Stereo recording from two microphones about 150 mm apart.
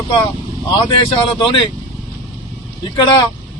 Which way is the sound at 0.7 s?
35° left (ahead or behind).